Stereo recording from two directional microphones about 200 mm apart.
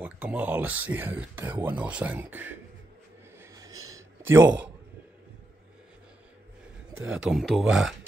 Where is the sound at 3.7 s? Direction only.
90° right.